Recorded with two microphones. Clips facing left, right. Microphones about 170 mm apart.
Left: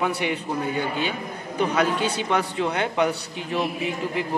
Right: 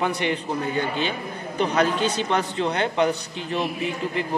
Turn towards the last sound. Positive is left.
turn(degrees=5)  # may be behind; listen again after turning